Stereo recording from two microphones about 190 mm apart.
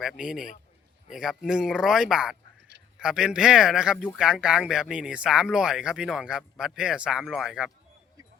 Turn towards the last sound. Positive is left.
turn(degrees=-5)  # may be behind; listen again after turning